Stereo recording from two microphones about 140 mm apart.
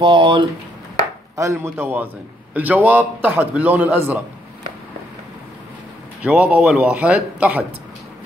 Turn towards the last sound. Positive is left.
turn(degrees=-10)  # may be behind; listen again after turning